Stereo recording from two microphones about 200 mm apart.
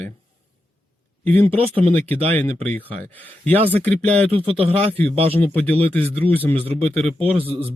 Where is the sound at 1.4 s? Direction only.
30° right (ahead or behind).